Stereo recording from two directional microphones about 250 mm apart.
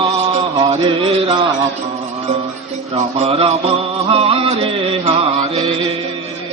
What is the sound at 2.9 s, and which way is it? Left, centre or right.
Music, right.